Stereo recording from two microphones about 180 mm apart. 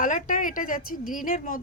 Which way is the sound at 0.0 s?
50° left (ahead or behind).